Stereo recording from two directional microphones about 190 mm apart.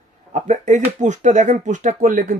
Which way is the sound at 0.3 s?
40° right (ahead or behind).